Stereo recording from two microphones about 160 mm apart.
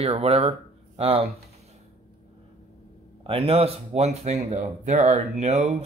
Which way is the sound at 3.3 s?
35° right (ahead or behind).